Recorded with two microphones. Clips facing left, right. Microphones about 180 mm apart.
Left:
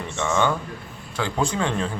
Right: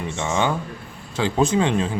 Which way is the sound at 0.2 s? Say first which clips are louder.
Left 1 dB; 15° right (ahead or behind).